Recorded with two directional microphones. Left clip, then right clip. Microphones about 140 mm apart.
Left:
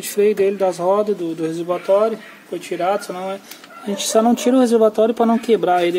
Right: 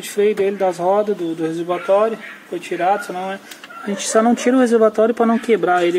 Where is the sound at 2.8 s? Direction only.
10° left (ahead or behind).